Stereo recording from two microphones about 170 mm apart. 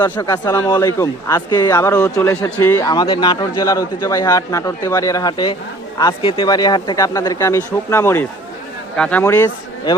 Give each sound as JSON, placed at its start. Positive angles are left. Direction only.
{"t": 0.0, "sound": "speech", "side_deg": 25}